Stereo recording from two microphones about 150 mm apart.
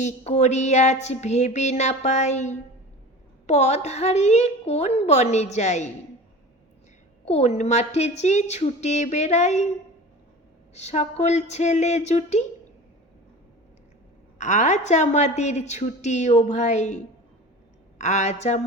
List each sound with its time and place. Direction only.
0.0 s a woman's voice: 50° left (ahead or behind)
7.3 s a woman's voice: 45° left (ahead or behind)
10.8 s a woman's voice: 50° left (ahead or behind)
14.3 s a woman's voice: 55° left (ahead or behind)